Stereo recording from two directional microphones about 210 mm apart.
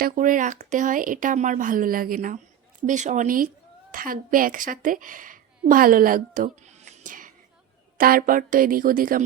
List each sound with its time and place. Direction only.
0.0 s a woman's voice: 40° right (ahead or behind)